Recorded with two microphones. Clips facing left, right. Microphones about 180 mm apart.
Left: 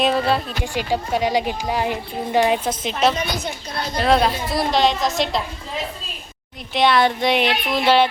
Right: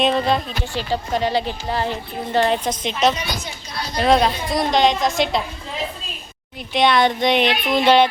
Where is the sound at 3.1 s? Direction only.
55° left (ahead or behind).